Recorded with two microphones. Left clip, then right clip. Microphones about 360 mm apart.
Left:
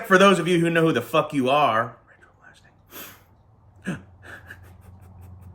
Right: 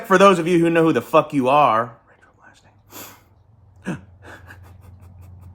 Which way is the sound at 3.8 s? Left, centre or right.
Centre.